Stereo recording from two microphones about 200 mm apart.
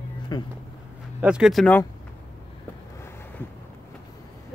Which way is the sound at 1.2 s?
5° right (ahead or behind).